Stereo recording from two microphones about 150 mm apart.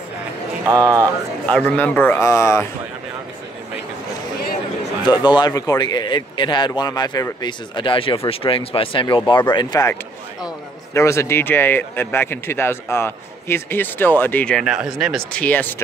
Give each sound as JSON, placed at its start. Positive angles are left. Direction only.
{"t": 0.7, "sound": "speech", "side_deg": -25}
{"t": 1.8, "sound": "a man's voice", "side_deg": 10}
{"t": 5.0, "sound": "a man's voice", "side_deg": 30}
{"t": 15.3, "sound": "speech", "side_deg": 10}